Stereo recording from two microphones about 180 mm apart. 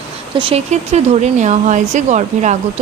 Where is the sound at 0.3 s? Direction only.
30° right (ahead or behind).